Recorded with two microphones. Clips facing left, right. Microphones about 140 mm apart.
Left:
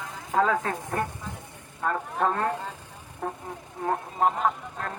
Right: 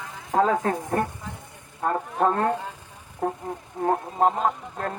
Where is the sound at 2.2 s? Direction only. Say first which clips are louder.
Right 4 dB; 35° right (ahead or behind).